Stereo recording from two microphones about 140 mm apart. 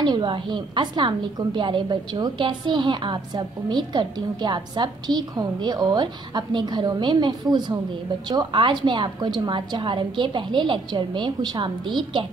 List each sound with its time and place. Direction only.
0.0 s a woman's voice: 35° right (ahead or behind)